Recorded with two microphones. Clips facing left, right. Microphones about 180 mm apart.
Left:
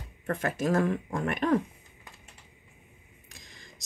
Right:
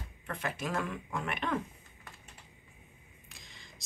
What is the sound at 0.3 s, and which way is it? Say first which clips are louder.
Speech: left 8 dB; 45° left (ahead or behind).